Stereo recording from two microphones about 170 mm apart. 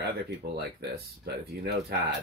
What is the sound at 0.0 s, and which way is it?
Speech, 70° right (ahead or behind).